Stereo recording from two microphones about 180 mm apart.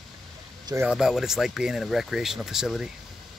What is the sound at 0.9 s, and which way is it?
Speech, centre (ahead or behind).